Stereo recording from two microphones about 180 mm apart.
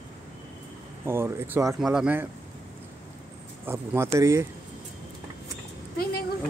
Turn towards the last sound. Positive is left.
turn(degrees=55)  # may be behind; listen again after turning